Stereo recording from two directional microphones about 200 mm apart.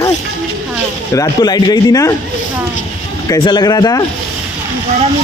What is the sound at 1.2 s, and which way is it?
Speech, 20° left (ahead or behind).